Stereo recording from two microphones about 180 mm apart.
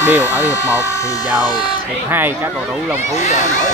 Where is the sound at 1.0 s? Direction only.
20° left (ahead or behind).